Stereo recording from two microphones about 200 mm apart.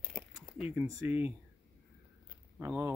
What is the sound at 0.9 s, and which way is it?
Speech, 10° right (ahead or behind).